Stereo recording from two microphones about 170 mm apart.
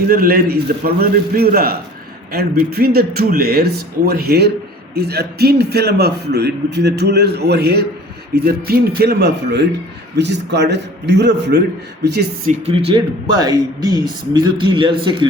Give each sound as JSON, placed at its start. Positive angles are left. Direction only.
{"t": 0.1, "sound": "a man's voice", "side_deg": -60}
{"t": 10.2, "sound": "a man's voice", "side_deg": -90}
{"t": 12.0, "sound": "a man's voice", "side_deg": -75}
{"t": 12.5, "sound": "speech", "side_deg": -35}
{"t": 12.9, "sound": "speech", "side_deg": -25}